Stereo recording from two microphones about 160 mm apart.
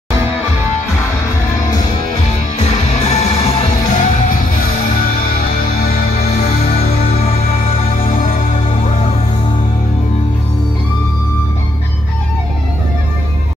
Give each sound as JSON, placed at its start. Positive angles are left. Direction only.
{"t": 2.5, "sound": "music", "side_deg": 45}
{"t": 6.8, "sound": "music", "side_deg": 35}
{"t": 8.1, "sound": "music", "side_deg": 60}